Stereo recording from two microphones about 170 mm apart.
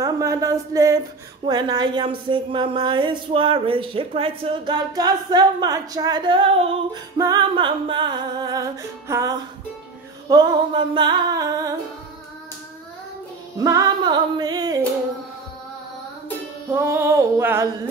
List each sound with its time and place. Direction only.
0.0 s speech: 20° right (ahead or behind)
7.2 s speech: 25° right (ahead or behind)
13.6 s speech: 20° right (ahead or behind)
16.7 s female singing: 15° right (ahead or behind)